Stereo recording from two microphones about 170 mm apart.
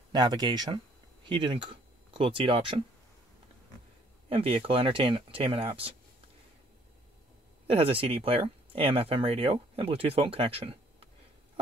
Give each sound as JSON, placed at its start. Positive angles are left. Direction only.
{"t": 0.1, "sound": "speech", "side_deg": -25}
{"t": 4.3, "sound": "speech", "side_deg": -35}
{"t": 7.6, "sound": "speech", "side_deg": -30}